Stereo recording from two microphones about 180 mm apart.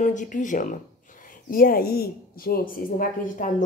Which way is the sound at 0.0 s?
45° left (ahead or behind).